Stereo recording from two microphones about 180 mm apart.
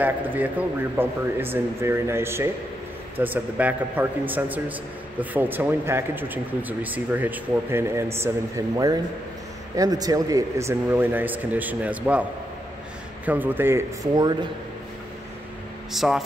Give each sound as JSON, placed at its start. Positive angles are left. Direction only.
{"t": 0.0, "sound": "speech", "side_deg": -10}
{"t": 14.1, "sound": "speech", "side_deg": -25}
{"t": 15.9, "sound": "speech", "side_deg": 0}